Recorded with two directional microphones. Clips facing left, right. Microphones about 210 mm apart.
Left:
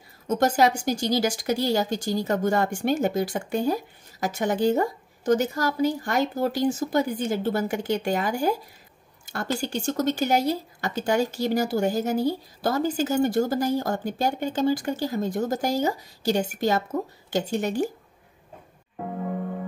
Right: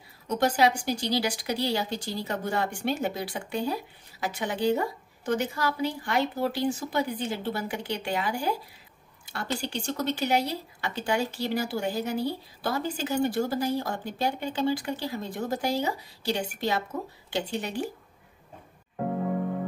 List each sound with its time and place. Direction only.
0.3 s speech: 45° left (ahead or behind)